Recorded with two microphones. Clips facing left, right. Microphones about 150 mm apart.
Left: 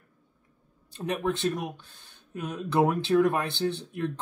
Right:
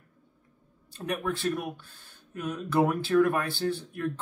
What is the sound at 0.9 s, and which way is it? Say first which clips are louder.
Speech: left 2 dB; 20° left (ahead or behind).